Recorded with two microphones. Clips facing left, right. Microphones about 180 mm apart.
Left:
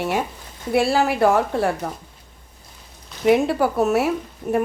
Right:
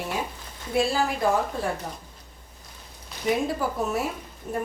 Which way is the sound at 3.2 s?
70° left (ahead or behind).